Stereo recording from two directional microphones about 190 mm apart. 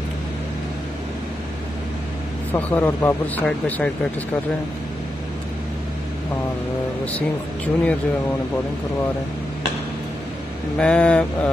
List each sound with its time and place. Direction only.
2.5 s speech: 10° left (ahead or behind)
7.1 s speech: 5° left (ahead or behind)
10.8 s speech: 5° left (ahead or behind)